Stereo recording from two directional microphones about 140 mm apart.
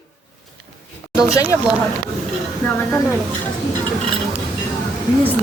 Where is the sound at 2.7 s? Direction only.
15° left (ahead or behind).